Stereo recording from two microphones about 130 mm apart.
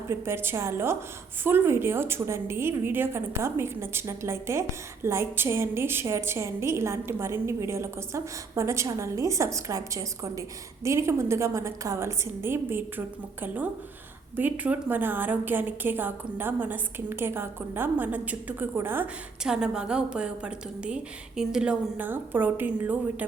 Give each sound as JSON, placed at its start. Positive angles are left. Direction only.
{"t": 0.1, "sound": "a woman's voice", "side_deg": -20}